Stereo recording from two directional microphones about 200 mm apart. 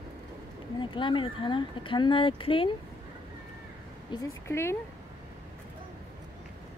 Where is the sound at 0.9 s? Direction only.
25° left (ahead or behind).